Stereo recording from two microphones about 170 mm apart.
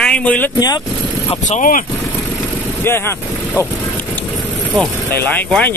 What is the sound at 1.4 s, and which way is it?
Speech, 50° left (ahead or behind).